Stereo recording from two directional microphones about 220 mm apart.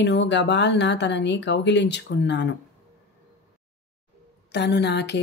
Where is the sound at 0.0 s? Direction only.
55° left (ahead or behind).